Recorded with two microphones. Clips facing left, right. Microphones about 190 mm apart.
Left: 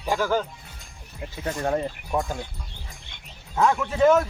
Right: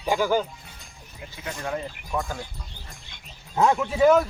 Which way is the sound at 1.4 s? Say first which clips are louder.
Left 5 dB; 45° left (ahead or behind).